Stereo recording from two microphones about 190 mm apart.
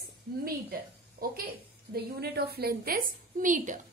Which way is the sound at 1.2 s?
50° right (ahead or behind).